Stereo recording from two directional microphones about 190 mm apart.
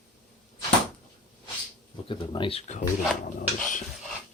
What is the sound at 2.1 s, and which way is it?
Speech, 25° left (ahead or behind).